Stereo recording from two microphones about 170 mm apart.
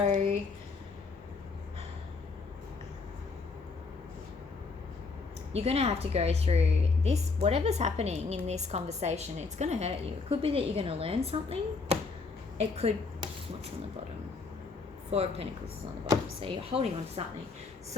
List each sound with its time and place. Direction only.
5.5 s a woman's voice: 35° right (ahead or behind)
15.1 s a woman's voice: 35° right (ahead or behind)